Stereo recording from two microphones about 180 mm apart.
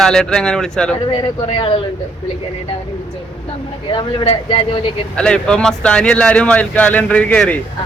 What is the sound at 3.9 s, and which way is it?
Speech, 25° left (ahead or behind).